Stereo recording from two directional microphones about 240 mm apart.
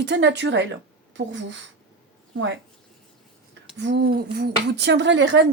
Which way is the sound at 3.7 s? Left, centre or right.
Right.